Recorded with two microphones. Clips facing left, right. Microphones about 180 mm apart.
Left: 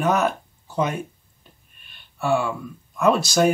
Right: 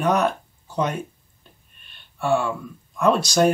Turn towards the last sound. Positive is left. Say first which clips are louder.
# even
turn(degrees=5)  # may be behind; listen again after turning